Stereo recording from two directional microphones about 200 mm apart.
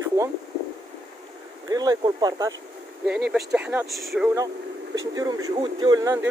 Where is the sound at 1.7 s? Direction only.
20° right (ahead or behind).